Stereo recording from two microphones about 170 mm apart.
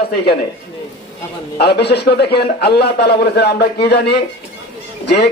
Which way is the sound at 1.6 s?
75° left (ahead or behind).